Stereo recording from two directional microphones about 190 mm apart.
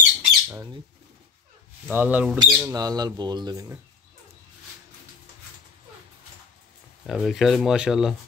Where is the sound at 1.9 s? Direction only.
10° right (ahead or behind).